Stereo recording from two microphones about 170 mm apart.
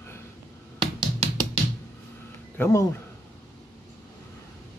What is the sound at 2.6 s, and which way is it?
Speech, 10° left (ahead or behind).